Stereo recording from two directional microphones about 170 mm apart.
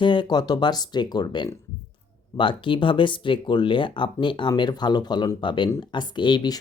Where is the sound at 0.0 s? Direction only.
25° left (ahead or behind).